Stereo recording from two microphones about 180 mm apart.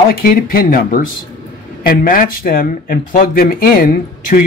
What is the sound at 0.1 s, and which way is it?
Speech, 55° left (ahead or behind).